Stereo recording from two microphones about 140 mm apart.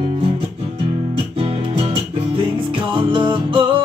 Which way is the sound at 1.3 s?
45° right (ahead or behind).